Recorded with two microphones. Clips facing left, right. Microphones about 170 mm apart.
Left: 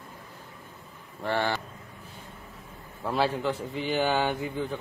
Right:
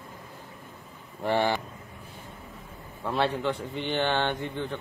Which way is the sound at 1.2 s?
15° right (ahead or behind).